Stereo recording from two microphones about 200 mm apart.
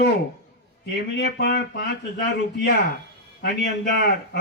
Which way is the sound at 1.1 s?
55° left (ahead or behind).